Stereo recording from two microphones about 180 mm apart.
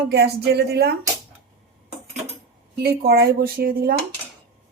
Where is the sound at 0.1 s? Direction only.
65° right (ahead or behind).